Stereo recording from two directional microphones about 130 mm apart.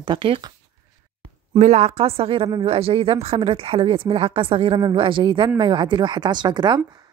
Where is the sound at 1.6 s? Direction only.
55° right (ahead or behind); by 6.8 s 35° right (ahead or behind).